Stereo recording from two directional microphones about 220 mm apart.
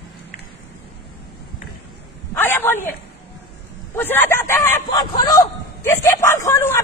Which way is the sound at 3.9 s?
10° left (ahead or behind).